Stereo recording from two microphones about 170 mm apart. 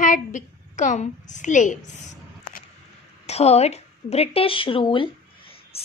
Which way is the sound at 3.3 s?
40° left (ahead or behind).